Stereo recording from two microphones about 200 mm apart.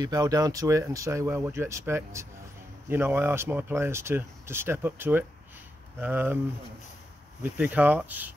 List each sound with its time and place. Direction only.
0.0 s speech: 20° right (ahead or behind)
7.5 s speech: 5° right (ahead or behind)